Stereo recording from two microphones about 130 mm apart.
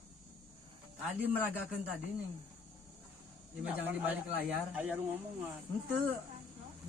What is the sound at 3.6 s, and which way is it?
Speech, 10° right (ahead or behind).